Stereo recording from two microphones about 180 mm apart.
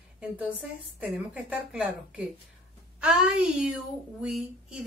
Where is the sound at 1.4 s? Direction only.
5° right (ahead or behind).